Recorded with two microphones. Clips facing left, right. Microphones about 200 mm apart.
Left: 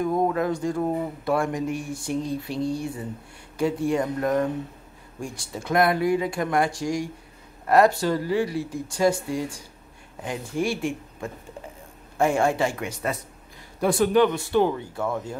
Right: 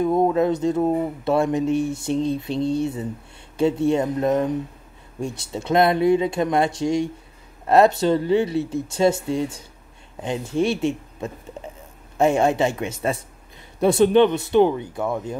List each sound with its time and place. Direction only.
0.0 s speech: 25° right (ahead or behind)